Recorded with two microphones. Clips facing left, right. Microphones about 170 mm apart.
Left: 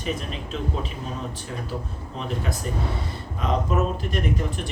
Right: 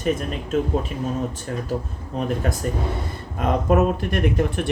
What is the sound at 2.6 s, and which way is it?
Speech, 50° right (ahead or behind).